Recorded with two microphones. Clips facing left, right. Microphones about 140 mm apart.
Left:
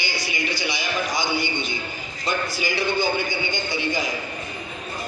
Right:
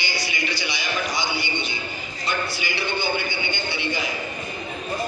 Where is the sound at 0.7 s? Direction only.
45° left (ahead or behind).